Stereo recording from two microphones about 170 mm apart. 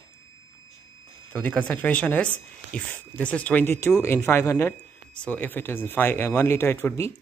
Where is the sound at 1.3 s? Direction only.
5° left (ahead or behind).